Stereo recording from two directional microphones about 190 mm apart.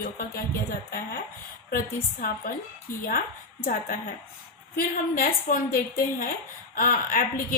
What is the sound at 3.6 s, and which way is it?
A woman's voice, 50° left (ahead or behind).